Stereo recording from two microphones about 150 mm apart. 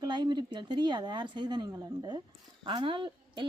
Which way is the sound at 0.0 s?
30° right (ahead or behind).